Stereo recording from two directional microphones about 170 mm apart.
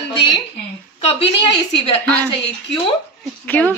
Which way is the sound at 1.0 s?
35° left (ahead or behind).